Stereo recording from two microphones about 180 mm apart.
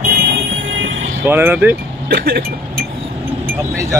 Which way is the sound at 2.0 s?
60° right (ahead or behind).